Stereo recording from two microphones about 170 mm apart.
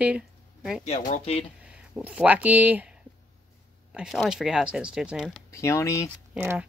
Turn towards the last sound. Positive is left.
turn(degrees=-10)  # may be behind; listen again after turning